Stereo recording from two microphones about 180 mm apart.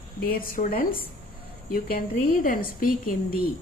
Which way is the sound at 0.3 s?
50° left (ahead or behind).